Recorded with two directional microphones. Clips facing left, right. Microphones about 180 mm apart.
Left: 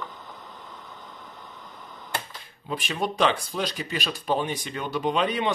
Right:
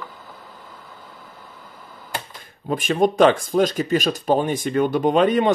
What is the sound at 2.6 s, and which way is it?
Speech, 45° right (ahead or behind).